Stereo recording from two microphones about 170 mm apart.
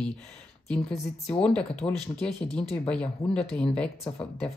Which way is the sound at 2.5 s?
5° left (ahead or behind).